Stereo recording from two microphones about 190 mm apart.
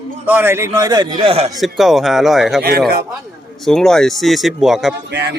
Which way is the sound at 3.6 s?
Centre (ahead or behind).